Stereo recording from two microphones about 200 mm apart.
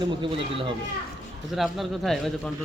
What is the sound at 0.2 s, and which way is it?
Speech, 25° right (ahead or behind).